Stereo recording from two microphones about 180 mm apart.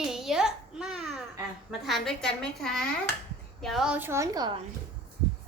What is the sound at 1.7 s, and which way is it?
A woman's voice, centre (ahead or behind).